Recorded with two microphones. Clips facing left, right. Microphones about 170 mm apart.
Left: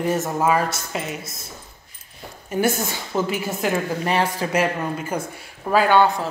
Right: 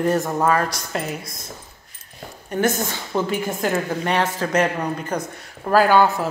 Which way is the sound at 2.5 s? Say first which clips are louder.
Even; 10° left (ahead or behind).